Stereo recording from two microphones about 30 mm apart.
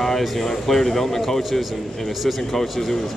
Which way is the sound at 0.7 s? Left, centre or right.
Centre.